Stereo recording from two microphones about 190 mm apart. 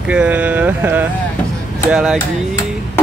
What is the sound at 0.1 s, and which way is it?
Mantra, 5° right (ahead or behind).